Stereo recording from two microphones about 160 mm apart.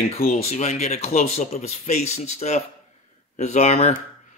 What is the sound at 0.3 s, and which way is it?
Speech, 45° left (ahead or behind).